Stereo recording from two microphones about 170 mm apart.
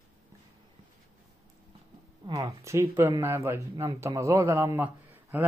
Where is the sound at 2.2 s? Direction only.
25° right (ahead or behind).